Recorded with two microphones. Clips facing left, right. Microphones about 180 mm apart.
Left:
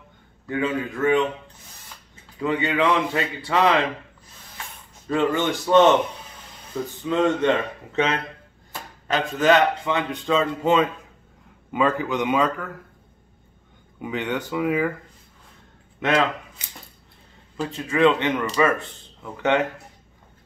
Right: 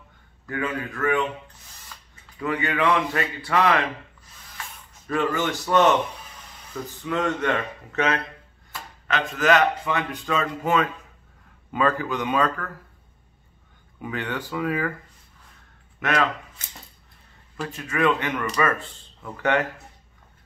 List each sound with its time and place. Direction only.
0.5 s speech: 20° left (ahead or behind)
2.4 s speech: 25° left (ahead or behind)
5.0 s speech: 25° left (ahead or behind)
13.9 s speech: 20° left (ahead or behind)
16.0 s speech: 25° left (ahead or behind)
17.6 s speech: 30° left (ahead or behind)